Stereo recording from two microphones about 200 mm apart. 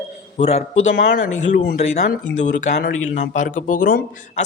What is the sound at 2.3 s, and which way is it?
Speech, 35° left (ahead or behind).